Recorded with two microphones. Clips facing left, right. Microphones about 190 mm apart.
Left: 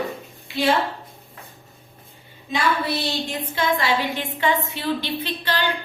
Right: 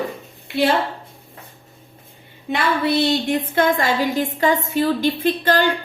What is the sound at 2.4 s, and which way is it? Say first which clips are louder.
A woman's voice: right 3 dB; 60° right (ahead or behind).